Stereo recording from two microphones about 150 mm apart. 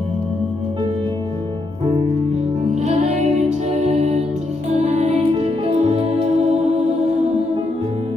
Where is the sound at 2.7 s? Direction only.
50° right (ahead or behind).